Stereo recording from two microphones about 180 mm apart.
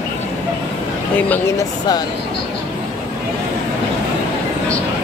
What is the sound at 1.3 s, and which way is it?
Speech, 20° left (ahead or behind).